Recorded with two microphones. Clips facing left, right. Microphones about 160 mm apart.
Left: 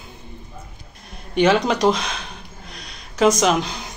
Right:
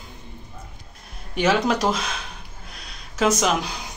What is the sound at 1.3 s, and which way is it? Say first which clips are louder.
Speech: left 3 dB; 5° right (ahead or behind).